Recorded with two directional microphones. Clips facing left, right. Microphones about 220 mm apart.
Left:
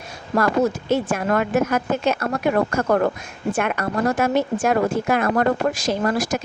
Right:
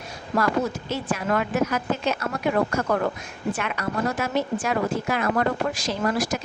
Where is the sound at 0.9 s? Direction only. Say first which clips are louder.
Left 5 dB; 50° left (ahead or behind).